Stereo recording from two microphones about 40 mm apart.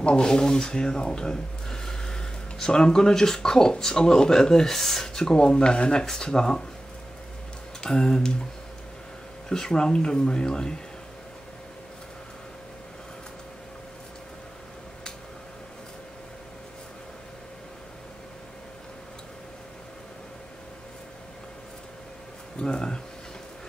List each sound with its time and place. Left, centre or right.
0.0 s speech: left
7.8 s speech: centre
9.5 s speech: centre
22.6 s speech: left